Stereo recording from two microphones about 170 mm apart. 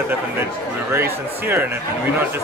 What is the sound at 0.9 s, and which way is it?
Speech, 15° right (ahead or behind).